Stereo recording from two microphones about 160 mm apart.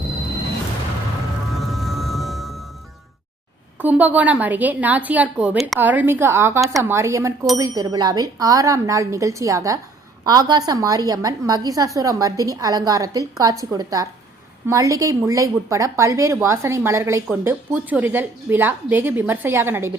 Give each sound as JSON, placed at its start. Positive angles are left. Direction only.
{"t": 1.5, "sound": "music", "side_deg": 0}
{"t": 3.8, "sound": "a woman's voice", "side_deg": -10}